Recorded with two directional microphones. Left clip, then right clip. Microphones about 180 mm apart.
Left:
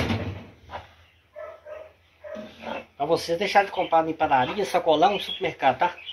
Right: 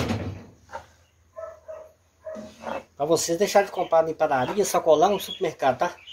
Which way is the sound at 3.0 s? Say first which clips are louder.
Right 2 dB; 85° right.